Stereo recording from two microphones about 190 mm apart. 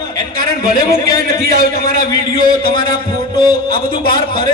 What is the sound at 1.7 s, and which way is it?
A man's voice, 50° left (ahead or behind).